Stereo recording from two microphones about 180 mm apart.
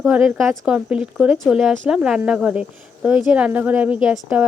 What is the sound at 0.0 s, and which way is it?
A woman's voice, 5° right (ahead or behind).